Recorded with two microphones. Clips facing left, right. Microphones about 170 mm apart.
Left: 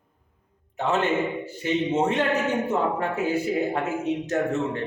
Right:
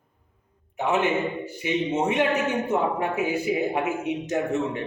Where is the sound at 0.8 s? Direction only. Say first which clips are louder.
Even; 10° right (ahead or behind).